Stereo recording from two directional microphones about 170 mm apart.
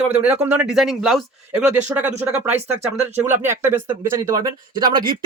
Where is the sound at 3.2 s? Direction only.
15° right (ahead or behind).